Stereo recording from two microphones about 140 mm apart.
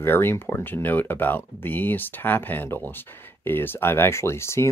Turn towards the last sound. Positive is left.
turn(degrees=20)  # may be behind; listen again after turning